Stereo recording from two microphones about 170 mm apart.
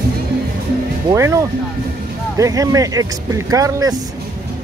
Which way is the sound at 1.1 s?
15° right (ahead or behind).